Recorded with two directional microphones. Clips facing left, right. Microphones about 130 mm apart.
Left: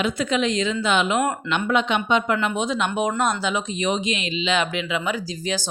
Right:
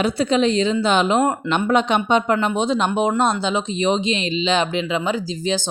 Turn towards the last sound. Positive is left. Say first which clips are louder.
# right 4 dB
turn(degrees=-25)  # may be behind; listen again after turning